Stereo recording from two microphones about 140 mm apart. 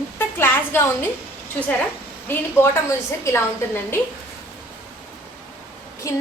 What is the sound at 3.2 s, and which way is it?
Speech, 15° left (ahead or behind).